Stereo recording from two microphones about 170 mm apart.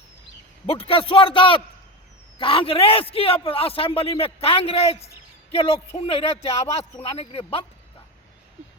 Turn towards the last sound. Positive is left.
turn(degrees=35)  # may be behind; listen again after turning